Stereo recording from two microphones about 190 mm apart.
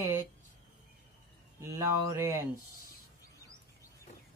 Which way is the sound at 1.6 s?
15° right (ahead or behind).